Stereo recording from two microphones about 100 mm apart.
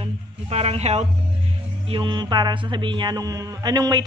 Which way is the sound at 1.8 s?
55° right (ahead or behind).